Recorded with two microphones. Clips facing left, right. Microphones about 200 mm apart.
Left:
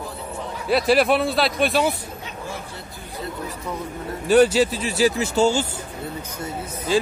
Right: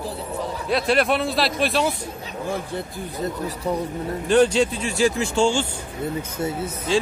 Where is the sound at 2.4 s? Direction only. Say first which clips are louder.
Right 10 dB; 55° right (ahead or behind).